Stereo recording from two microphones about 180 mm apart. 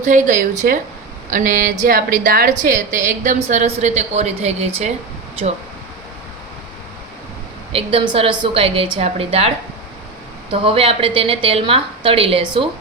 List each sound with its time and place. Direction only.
0.0 s a woman's voice: 45° right (ahead or behind)
7.7 s a woman's voice: 30° right (ahead or behind)
10.5 s a woman's voice: 30° right (ahead or behind)